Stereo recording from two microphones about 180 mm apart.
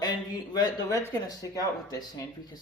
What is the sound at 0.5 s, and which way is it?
Speech, 20° left (ahead or behind).